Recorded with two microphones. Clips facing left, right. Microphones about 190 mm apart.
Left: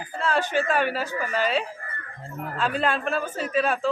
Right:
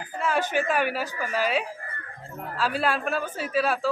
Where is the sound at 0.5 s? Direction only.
10° right (ahead or behind).